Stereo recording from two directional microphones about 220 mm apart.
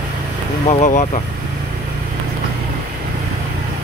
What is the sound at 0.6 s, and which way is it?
Speech, 35° left (ahead or behind).